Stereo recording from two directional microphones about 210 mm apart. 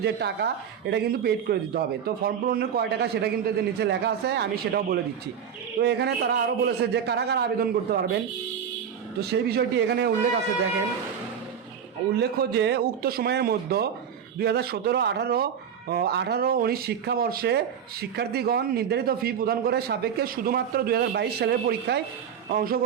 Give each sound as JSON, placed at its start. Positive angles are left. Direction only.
{"t": 0.0, "sound": "a man's voice", "side_deg": -50}
{"t": 9.2, "sound": "a man's voice", "side_deg": -50}
{"t": 12.1, "sound": "a man's voice", "side_deg": -50}